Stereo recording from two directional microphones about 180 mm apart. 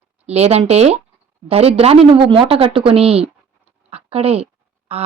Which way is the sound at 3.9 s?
35° right (ahead or behind).